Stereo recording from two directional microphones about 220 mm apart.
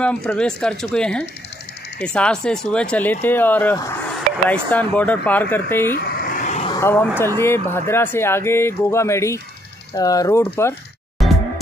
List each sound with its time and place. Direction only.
0.0 s speech: 5° left (ahead or behind)
5.9 s a sound: 35° left (ahead or behind)
6.8 s speech: 10° left (ahead or behind)
11.1 s music: centre (ahead or behind)